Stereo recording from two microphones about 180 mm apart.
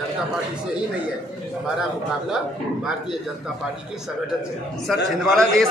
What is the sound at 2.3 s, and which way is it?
Speech, 5° right (ahead or behind).